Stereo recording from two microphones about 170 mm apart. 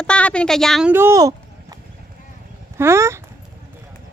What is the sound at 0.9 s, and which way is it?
Speech, 15° right (ahead or behind).